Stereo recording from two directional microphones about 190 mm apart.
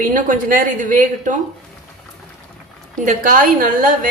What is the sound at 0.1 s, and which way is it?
A woman's voice, 45° right (ahead or behind).